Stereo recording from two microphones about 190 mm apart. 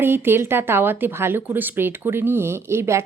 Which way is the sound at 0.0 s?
10° right (ahead or behind).